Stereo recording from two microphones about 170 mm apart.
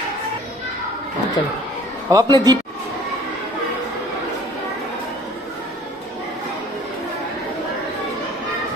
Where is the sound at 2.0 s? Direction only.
20° right (ahead or behind).